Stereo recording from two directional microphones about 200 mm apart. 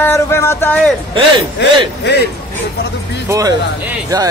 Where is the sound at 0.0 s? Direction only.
10° left (ahead or behind).